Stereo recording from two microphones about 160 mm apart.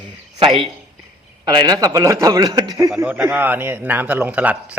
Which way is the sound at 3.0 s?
10° right (ahead or behind).